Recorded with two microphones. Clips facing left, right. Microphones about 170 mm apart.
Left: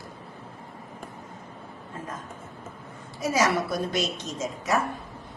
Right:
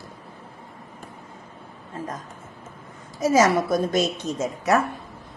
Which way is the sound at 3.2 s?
50° right (ahead or behind).